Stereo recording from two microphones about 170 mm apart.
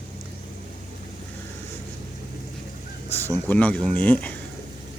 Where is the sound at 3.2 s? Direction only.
10° left (ahead or behind).